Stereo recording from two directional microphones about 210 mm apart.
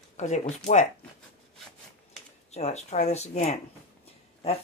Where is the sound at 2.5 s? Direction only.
30° left (ahead or behind).